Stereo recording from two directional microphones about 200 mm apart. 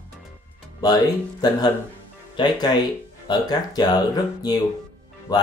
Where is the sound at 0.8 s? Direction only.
20° left (ahead or behind).